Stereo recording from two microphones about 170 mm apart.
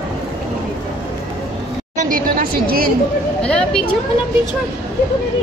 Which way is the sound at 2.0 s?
55° right (ahead or behind).